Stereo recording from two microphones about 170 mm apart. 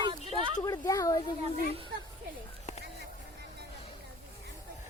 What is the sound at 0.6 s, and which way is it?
Speech, 20° left (ahead or behind).